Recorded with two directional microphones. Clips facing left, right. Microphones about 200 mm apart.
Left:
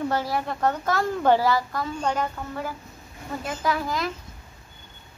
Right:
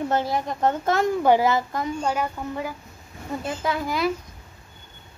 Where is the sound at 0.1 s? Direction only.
20° right (ahead or behind).